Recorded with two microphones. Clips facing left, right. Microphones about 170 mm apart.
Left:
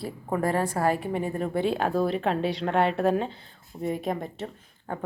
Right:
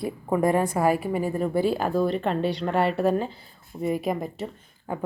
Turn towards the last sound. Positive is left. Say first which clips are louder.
# right 2 dB
turn(degrees=-5)  # may be behind; listen again after turning